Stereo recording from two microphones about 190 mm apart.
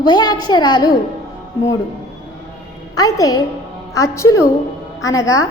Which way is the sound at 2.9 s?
20° left (ahead or behind).